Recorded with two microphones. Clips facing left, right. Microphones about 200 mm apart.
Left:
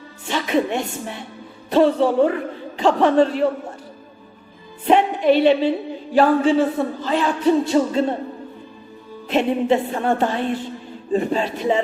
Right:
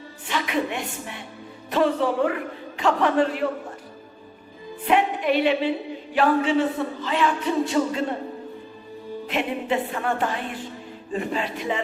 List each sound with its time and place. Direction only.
0.3 s music: 30° left (ahead or behind)
4.9 s a woman's voice: 30° left (ahead or behind)
6.1 s music: 35° left (ahead or behind)
9.3 s music: 30° left (ahead or behind)